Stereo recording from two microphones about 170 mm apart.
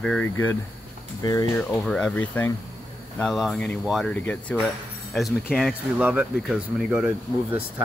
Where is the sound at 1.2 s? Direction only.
20° left (ahead or behind).